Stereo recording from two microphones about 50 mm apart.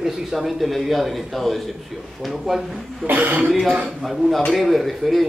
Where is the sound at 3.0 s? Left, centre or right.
Right.